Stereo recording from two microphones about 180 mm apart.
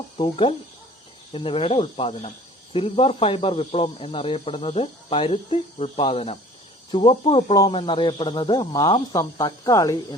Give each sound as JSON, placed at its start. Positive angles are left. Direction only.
{"t": 0.2, "sound": "speech", "side_deg": 30}